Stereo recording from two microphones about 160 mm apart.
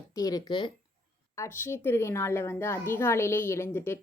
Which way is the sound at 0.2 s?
25° left (ahead or behind).